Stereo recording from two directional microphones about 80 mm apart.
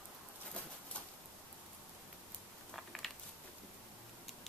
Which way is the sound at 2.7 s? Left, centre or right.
Centre.